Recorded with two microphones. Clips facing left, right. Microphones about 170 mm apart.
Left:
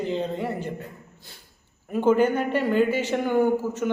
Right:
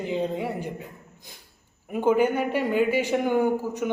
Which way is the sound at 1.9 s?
10° right (ahead or behind).